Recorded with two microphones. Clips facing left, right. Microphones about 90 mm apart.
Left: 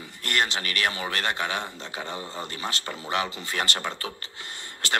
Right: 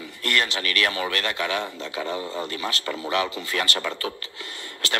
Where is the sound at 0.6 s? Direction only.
30° left (ahead or behind).